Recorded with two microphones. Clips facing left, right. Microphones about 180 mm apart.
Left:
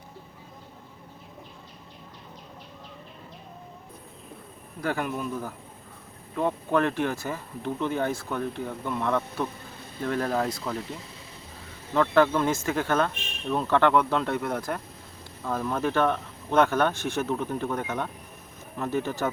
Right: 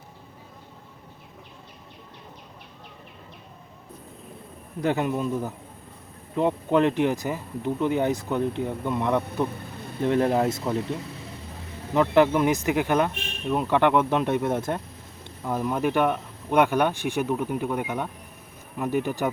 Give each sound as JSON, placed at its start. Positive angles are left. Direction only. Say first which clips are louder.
{"t": 4.8, "sound": "speech", "louder": "right 5 dB", "side_deg": -20}
{"t": 11.9, "sound": "speech", "louder": "right 2 dB", "side_deg": -15}